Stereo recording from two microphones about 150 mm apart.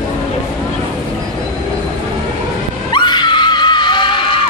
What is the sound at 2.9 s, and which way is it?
Screaming, 30° left (ahead or behind).